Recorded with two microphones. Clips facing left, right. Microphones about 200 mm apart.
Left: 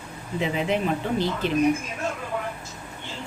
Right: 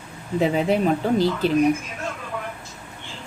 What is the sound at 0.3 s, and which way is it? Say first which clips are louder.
Speech: right 5 dB; 40° right (ahead or behind).